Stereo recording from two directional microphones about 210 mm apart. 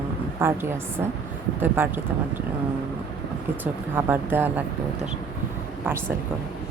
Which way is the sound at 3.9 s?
10° right (ahead or behind).